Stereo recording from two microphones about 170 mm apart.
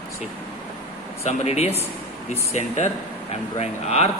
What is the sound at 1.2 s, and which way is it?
Speech, 40° left (ahead or behind).